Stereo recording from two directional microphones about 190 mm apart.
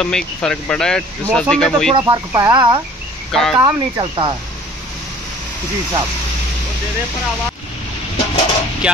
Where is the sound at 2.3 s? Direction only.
20° right (ahead or behind).